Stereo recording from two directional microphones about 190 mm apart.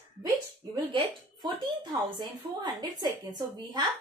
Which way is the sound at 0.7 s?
25° right (ahead or behind).